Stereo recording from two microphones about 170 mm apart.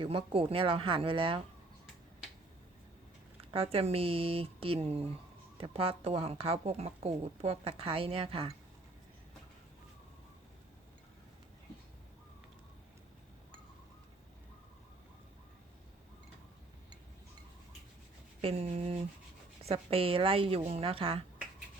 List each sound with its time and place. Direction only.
0.0 s a woman's voice: 30° right (ahead or behind)
3.5 s a woman's voice: 35° right (ahead or behind)
18.4 s a woman's voice: 35° right (ahead or behind)